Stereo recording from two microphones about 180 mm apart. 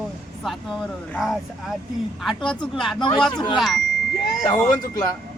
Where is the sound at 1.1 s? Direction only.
Centre (ahead or behind).